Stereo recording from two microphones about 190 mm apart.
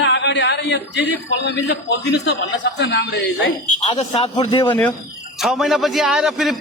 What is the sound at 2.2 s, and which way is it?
Speech, 60° left (ahead or behind).